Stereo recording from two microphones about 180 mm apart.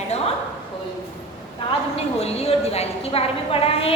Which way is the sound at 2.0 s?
35° left (ahead or behind).